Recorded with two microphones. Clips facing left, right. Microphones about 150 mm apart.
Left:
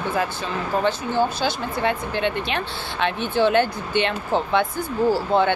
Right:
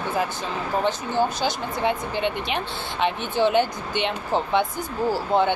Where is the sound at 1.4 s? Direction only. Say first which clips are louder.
Left 1 dB; 15° right (ahead or behind).